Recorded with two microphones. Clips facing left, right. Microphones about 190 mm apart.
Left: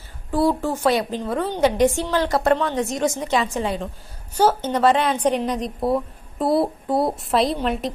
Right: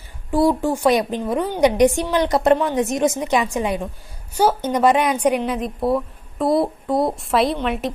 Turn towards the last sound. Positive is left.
turn(degrees=0)  # may be behind; listen again after turning